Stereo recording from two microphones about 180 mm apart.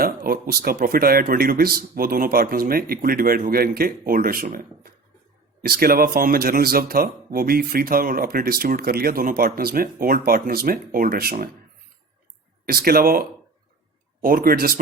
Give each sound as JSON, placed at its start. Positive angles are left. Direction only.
{"t": 0.0, "sound": "speech", "side_deg": -55}
{"t": 12.6, "sound": "speech", "side_deg": -55}